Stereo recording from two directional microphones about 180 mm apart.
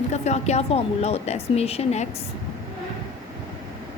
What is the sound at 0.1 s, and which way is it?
A woman's voice, 40° left (ahead or behind).